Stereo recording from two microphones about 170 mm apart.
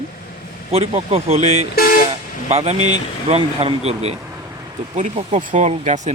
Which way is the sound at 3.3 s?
35° right (ahead or behind).